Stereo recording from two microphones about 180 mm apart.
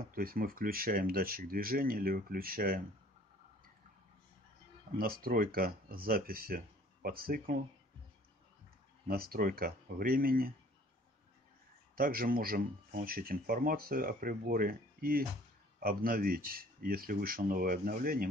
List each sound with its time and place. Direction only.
0.1 s speech: 55° right (ahead or behind)
4.9 s speech: 55° right (ahead or behind)
9.0 s speech: 55° right (ahead or behind)
11.9 s speech: 55° right (ahead or behind)